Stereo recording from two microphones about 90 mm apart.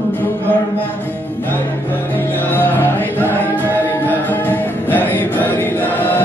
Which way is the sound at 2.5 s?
25° left (ahead or behind).